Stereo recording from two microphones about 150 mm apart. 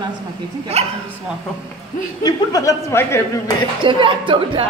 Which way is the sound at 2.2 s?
25° left (ahead or behind).